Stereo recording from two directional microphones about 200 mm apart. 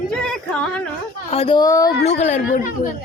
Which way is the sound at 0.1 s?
Centre (ahead or behind).